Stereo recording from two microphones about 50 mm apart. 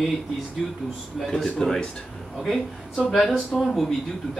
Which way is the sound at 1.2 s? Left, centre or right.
Centre.